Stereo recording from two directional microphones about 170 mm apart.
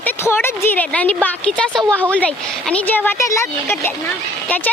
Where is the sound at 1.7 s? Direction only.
20° right (ahead or behind).